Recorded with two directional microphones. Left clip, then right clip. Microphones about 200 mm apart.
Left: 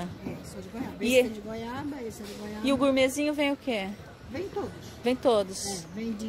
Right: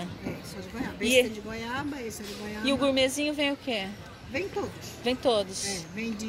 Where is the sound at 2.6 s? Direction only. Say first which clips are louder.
Left 1 dB; 20° left (ahead or behind).